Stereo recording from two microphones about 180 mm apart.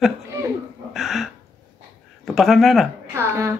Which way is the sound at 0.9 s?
Centre (ahead or behind).